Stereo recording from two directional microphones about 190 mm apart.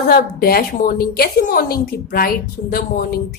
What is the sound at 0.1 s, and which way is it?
A woman's voice, 50° left (ahead or behind).